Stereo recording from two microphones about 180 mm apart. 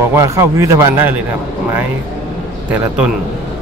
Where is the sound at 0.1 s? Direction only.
15° right (ahead or behind).